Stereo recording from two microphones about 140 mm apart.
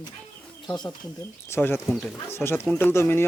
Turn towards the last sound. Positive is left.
turn(degrees=20)  # may be behind; listen again after turning